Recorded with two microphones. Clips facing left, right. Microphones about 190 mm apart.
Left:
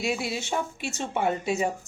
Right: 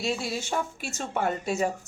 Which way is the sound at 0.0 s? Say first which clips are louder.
Left 1 dB; 10° left (ahead or behind).